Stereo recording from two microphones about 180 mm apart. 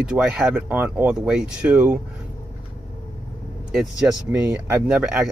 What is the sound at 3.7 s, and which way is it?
Speech, 5° right (ahead or behind).